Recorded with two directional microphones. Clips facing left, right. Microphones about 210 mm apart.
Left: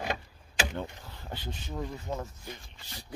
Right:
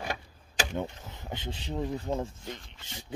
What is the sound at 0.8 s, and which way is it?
Speech, 20° right (ahead or behind).